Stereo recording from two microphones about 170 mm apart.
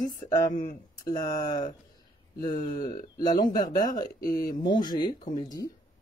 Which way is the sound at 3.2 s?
25° left (ahead or behind).